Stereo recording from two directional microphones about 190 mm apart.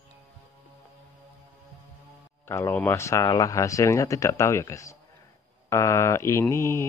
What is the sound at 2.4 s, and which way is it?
Mantra, 15° left (ahead or behind).